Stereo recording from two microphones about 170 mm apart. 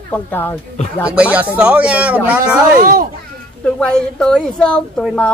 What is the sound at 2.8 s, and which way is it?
Speech, 55° right (ahead or behind).